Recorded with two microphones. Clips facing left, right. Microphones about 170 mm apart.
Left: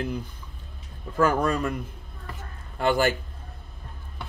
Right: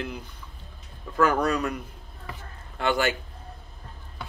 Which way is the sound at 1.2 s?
45° left (ahead or behind).